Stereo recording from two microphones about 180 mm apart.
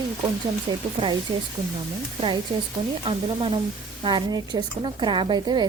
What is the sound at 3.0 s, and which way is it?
A woman's voice, 30° right (ahead or behind).